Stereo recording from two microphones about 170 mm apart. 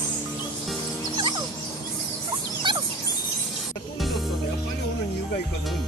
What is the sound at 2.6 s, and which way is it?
Bird, 30° right (ahead or behind).